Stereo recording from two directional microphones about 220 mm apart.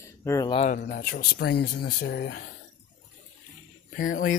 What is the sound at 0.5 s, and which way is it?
Speech, 30° left (ahead or behind).